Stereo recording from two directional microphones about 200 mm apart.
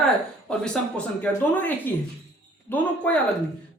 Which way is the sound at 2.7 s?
10° left (ahead or behind).